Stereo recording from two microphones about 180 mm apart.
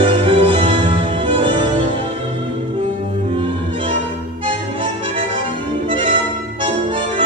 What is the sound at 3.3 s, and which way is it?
Music, 30° right (ahead or behind).